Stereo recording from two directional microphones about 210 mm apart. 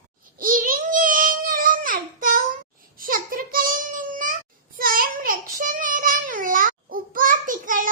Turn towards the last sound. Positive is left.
turn(degrees=-40)  # may be behind; listen again after turning